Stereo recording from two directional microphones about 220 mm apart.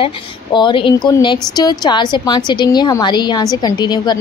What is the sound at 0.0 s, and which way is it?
Speech, 20° left (ahead or behind).